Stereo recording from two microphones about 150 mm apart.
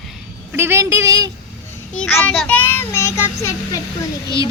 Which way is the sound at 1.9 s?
10° left (ahead or behind).